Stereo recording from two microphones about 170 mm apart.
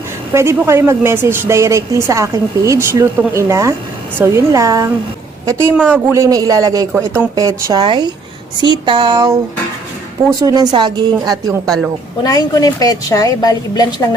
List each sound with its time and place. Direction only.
0.3 s a woman's voice: 15° right (ahead or behind)
10.4 s speech: 25° right (ahead or behind)
11.6 s speech: centre (ahead or behind)
12.2 s a woman's voice: 20° left (ahead or behind)